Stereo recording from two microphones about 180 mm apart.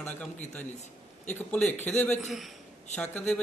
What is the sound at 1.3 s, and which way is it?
A man's voice, 10° left (ahead or behind).